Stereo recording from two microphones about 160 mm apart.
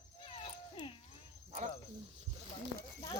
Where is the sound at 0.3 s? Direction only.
35° left (ahead or behind).